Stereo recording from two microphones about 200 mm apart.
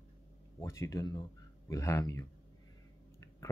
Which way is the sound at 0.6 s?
15° left (ahead or behind).